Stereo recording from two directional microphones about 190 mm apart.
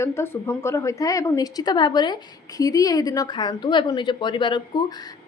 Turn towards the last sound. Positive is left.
turn(degrees=25)  # may be behind; listen again after turning